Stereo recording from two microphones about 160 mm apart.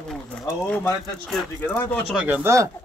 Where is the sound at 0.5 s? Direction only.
15° left (ahead or behind).